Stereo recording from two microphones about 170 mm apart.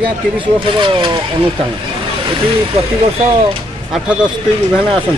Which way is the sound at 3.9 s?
5° right (ahead or behind).